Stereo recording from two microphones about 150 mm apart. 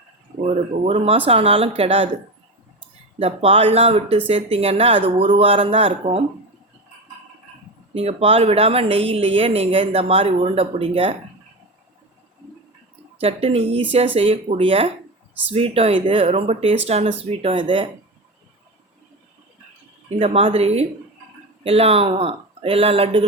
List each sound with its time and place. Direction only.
0.4 s a woman's voice: 40° right (ahead or behind)
3.2 s a woman's voice: 40° right (ahead or behind)
7.9 s a woman's voice: 40° right (ahead or behind)
13.1 s a woman's voice: 40° right (ahead or behind)
20.1 s a woman's voice: 40° right (ahead or behind)